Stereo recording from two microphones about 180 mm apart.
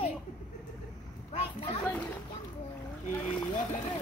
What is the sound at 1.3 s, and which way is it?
Speech, 30° left (ahead or behind).